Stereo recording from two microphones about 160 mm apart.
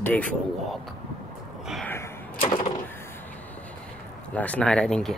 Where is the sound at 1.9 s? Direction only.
15° left (ahead or behind).